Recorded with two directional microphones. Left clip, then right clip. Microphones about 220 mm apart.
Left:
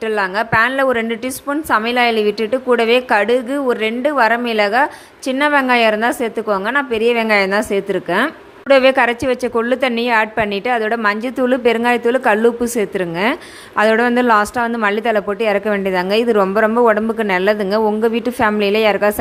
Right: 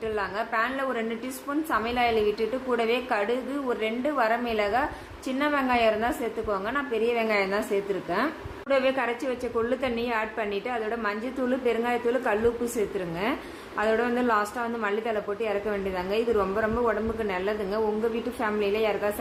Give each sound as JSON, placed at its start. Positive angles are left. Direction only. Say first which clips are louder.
{"t": 0.0, "sound": "a woman's voice", "louder": "left 12 dB", "side_deg": 40}